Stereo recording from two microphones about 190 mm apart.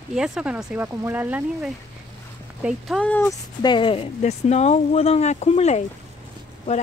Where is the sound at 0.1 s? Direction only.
5° right (ahead or behind).